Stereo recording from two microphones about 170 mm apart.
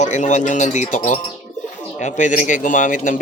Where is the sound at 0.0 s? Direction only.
45° left (ahead or behind).